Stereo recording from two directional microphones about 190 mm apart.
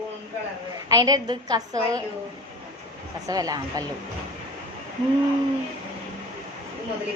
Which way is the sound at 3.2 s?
20° right (ahead or behind).